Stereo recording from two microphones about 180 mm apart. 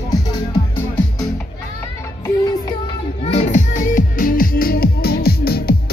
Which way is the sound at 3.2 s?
40° left (ahead or behind).